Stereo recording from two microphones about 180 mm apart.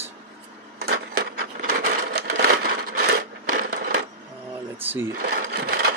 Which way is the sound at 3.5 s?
60° right (ahead or behind).